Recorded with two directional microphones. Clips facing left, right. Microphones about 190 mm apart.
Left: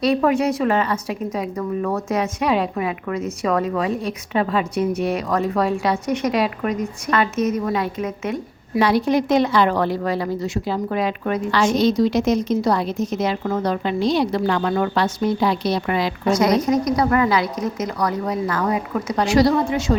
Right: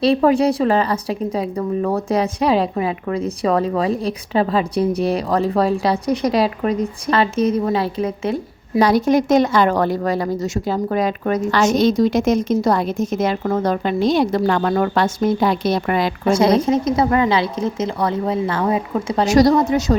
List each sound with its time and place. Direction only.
0.0 s a woman's voice: 30° right (ahead or behind); by 16.1 s 50° right (ahead or behind)
16.2 s a woman's voice: 30° right (ahead or behind)
19.3 s a woman's voice: 40° right (ahead or behind)